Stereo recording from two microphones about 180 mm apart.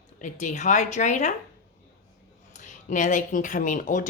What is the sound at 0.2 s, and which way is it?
Speech, 40° left (ahead or behind).